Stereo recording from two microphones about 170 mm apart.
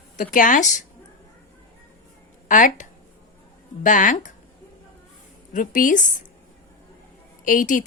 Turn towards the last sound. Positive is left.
turn(degrees=50)  # may be behind; listen again after turning